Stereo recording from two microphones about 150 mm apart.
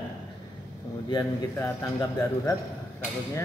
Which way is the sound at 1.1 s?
20° left (ahead or behind).